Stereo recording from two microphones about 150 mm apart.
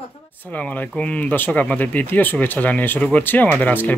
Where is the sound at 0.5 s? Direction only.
5° left (ahead or behind).